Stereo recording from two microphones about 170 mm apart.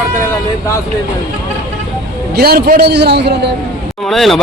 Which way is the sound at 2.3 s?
65° right (ahead or behind).